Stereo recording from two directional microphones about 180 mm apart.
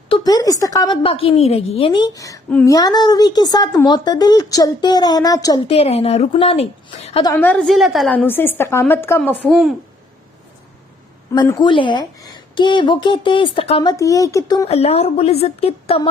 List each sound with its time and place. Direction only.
0.1 s speech: 20° left (ahead or behind)
5.6 s a woman's voice: 35° left (ahead or behind)
7.3 s a woman's voice: 5° left (ahead or behind)
9.5 s speech: centre (ahead or behind)
11.3 s speech: 20° left (ahead or behind)
13.9 s speech: 20° left (ahead or behind)
14.7 s a woman's voice: 35° left (ahead or behind)